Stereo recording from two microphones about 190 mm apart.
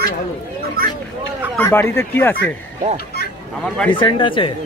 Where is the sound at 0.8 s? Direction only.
50° right (ahead or behind).